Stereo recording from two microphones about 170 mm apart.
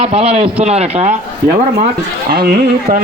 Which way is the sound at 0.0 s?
35° right (ahead or behind).